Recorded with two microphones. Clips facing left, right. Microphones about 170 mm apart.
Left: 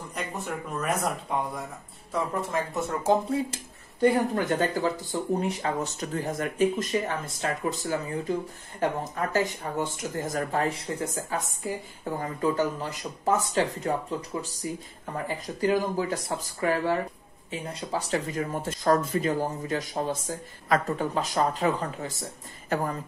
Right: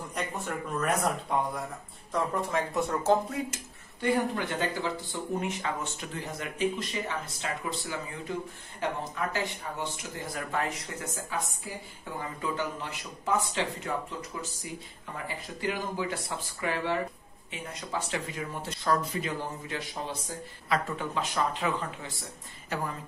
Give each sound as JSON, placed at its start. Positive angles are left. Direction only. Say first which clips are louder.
{"t": 0.1, "sound": "speech", "louder": "left 1 dB", "side_deg": 5}
{"t": 3.3, "sound": "speech", "louder": "left 6 dB", "side_deg": 30}
{"t": 12.0, "sound": "speech", "louder": "left 7 dB", "side_deg": 40}
{"t": 15.2, "sound": "speech", "louder": "left 7 dB", "side_deg": 40}
{"t": 22.7, "sound": "speech", "louder": "left 6 dB", "side_deg": 50}